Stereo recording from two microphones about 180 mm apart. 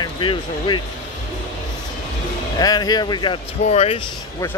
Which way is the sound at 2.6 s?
20° left (ahead or behind).